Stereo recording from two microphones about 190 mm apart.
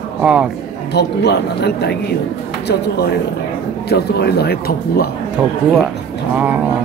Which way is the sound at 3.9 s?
60° left (ahead or behind).